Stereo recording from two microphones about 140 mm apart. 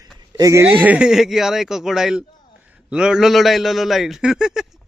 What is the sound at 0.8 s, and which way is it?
A man's voice, 10° right (ahead or behind).